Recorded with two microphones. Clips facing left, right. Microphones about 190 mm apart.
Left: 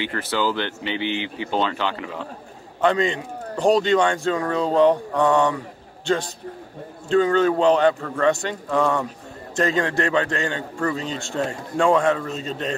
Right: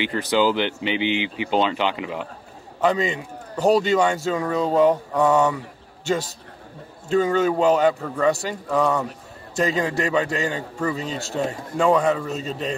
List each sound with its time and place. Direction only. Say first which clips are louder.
0.0 s speech: right 4 dB; 15° right (ahead or behind)
2.8 s speech: left 1 dB; 5° right (ahead or behind)
7.1 s speech: left 2 dB; 10° right (ahead or behind)